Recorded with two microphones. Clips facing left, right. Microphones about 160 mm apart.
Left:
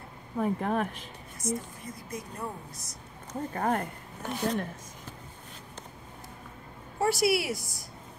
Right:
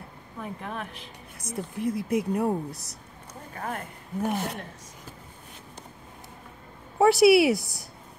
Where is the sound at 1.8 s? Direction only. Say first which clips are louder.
Right 14 dB; 70° right (ahead or behind).